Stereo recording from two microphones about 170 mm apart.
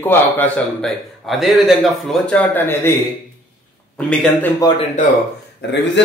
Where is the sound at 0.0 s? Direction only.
10° left (ahead or behind).